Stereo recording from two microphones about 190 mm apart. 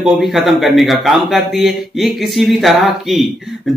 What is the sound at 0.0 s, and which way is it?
Speech, centre (ahead or behind).